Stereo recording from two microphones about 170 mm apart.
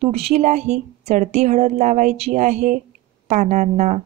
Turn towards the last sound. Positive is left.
turn(degrees=-45)  # may be behind; listen again after turning